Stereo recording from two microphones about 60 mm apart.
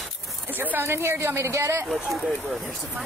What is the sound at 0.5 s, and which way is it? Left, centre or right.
Speech, right.